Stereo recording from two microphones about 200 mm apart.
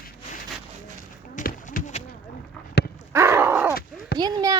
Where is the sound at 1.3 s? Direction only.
40° left (ahead or behind).